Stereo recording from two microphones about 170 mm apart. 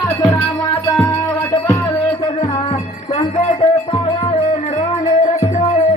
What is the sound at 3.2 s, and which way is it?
Music, 35° left (ahead or behind).